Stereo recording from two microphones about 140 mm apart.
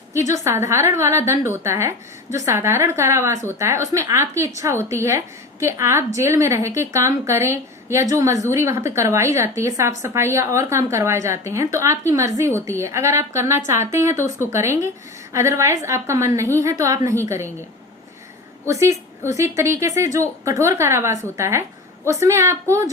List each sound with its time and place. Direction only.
0.3 s a woman's voice: 20° right (ahead or behind)
18.6 s a woman's voice: 20° right (ahead or behind)